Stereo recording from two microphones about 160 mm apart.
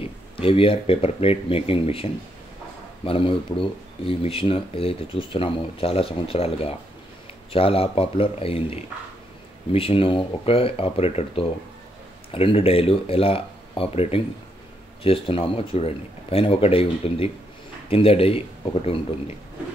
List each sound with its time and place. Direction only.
0.0 s speech: 35° left (ahead or behind)